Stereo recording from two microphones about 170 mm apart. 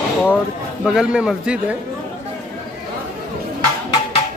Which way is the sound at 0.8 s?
5° right (ahead or behind).